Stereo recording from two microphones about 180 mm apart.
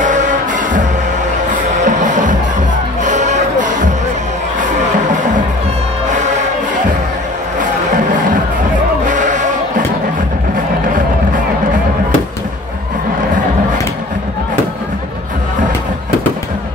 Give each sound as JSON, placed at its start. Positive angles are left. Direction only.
{"t": 0.0, "sound": "music", "side_deg": -45}
{"t": 9.0, "sound": "music", "side_deg": -45}